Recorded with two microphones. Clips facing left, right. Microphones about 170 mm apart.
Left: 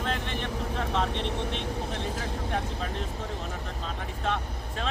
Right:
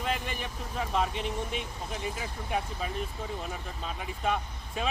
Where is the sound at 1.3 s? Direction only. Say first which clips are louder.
Left 3 dB; 70° left (ahead or behind).